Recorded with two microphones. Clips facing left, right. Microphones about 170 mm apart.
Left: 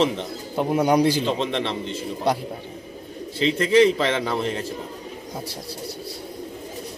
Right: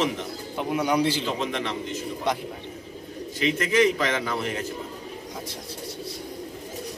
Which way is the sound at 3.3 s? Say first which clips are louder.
Left 5 dB; 30° left (ahead or behind).